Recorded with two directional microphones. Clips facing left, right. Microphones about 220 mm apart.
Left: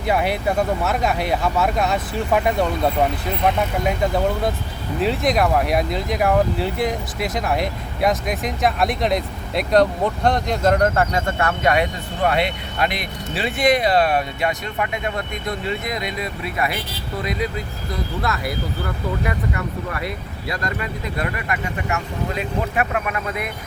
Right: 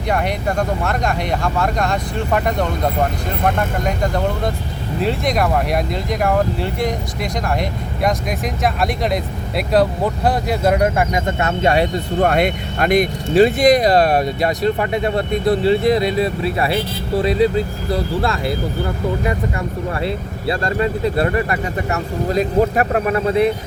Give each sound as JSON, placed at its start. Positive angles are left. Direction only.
{"t": 0.1, "sound": "speech", "side_deg": 5}
{"t": 12.2, "sound": "speech", "side_deg": -45}
{"t": 19.9, "sound": "speech", "side_deg": -30}